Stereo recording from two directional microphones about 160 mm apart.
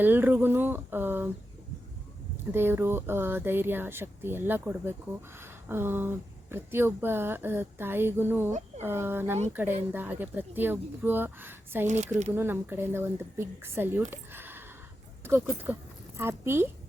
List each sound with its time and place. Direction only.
0.0 s speech: 10° right (ahead or behind)
2.5 s a woman's voice: 15° right (ahead or behind)